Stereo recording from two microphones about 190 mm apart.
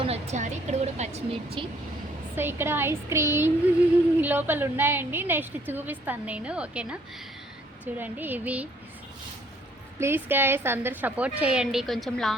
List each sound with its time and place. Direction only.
0.0 s a sound: 35° right (ahead or behind)
2.3 s a woman's voice: 10° right (ahead or behind)
10.0 s a woman's voice: 10° right (ahead or behind)